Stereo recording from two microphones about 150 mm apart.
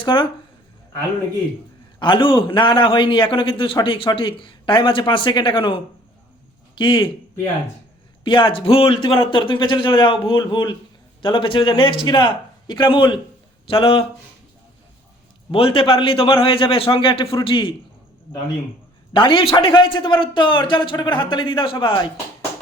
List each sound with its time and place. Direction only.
0.0 s a man's voice: 35° left (ahead or behind)
2.0 s a man's voice: 30° left (ahead or behind)
8.2 s a man's voice: 35° left (ahead or behind)
15.5 s a man's voice: 35° left (ahead or behind)
19.1 s a man's voice: 35° left (ahead or behind)